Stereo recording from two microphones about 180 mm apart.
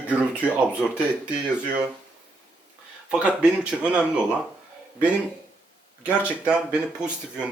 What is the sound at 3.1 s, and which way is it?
Speech, 5° right (ahead or behind).